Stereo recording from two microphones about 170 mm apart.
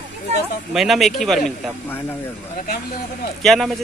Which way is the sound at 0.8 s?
Centre (ahead or behind).